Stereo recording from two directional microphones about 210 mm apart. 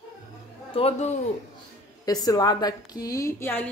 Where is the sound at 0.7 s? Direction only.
30° left (ahead or behind).